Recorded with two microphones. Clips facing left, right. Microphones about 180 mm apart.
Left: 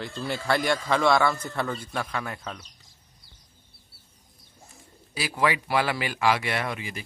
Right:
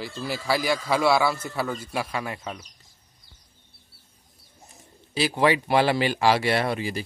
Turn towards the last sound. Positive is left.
turn(degrees=-35)  # may be behind; listen again after turning